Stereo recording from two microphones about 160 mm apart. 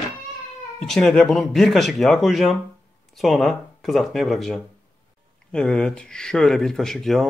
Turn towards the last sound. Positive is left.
turn(degrees=0)  # may be behind; listen again after turning